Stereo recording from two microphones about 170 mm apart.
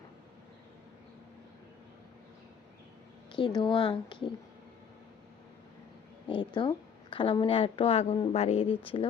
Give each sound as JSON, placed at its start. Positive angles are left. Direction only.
{"t": 3.3, "sound": "speech", "side_deg": 30}
{"t": 6.2, "sound": "a woman's voice", "side_deg": 25}